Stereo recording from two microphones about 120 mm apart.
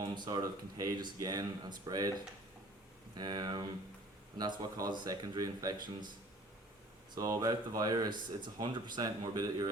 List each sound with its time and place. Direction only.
0.0 s speech: 35° right (ahead or behind)
3.2 s speech: 35° right (ahead or behind)
7.2 s speech: 30° right (ahead or behind)